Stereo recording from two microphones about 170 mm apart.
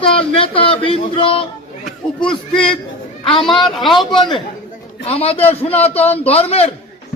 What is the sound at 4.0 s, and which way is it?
A man's voice, 25° left (ahead or behind).